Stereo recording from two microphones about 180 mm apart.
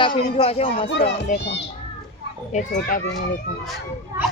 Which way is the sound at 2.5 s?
40° left (ahead or behind).